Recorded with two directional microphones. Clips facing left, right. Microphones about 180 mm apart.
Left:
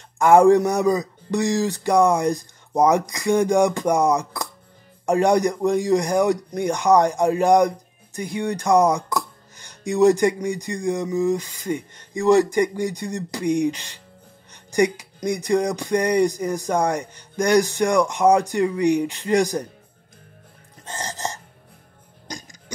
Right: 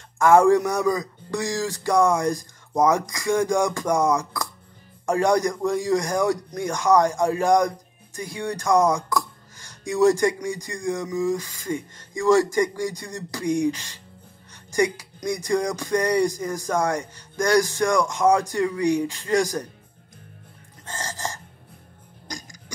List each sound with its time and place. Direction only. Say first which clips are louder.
0.2 s speech: left 2 dB; 20° left (ahead or behind)
20.8 s gasp: left 2 dB; 20° left (ahead or behind)